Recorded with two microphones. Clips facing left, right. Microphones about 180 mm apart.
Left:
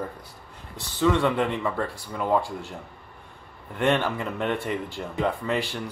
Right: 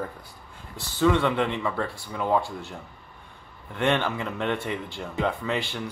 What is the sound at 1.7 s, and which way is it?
Speech, 40° left (ahead or behind).